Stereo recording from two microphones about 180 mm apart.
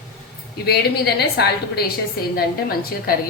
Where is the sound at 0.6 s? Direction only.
60° left (ahead or behind).